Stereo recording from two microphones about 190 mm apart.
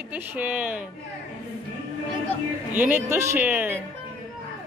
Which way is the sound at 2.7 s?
10° right (ahead or behind).